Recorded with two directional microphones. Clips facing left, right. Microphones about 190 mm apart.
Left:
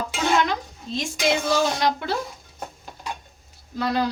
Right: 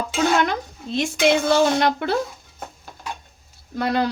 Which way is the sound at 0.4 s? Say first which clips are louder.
Right 3 dB; 65° right (ahead or behind).